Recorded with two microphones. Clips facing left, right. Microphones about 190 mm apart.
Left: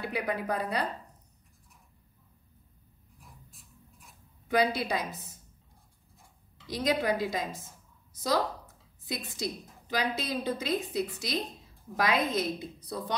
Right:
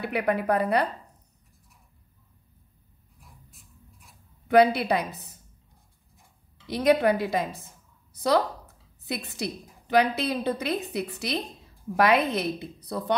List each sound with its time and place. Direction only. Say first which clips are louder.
0.0 s a woman's voice: right 6 dB; 60° right (ahead or behind)
4.5 s a woman's voice: right 8 dB; 60° right (ahead or behind)
6.7 s a woman's voice: right 7 dB; 65° right (ahead or behind)
8.1 s a sound: right 6 dB; 65° right (ahead or behind)
9.0 s a woman's voice: right 3 dB; 65° right (ahead or behind)